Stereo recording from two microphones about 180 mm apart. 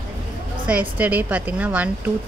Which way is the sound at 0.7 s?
10° right (ahead or behind).